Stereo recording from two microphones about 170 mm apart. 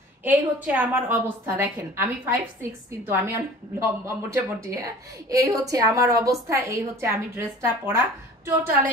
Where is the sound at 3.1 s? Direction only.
15° right (ahead or behind).